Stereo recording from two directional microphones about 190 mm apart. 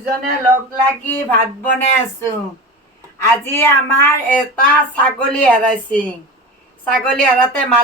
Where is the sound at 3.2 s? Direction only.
15° left (ahead or behind).